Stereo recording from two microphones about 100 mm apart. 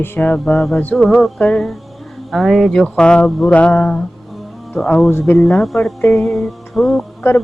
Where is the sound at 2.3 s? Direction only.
Centre (ahead or behind); by 4.0 s 15° left (ahead or behind).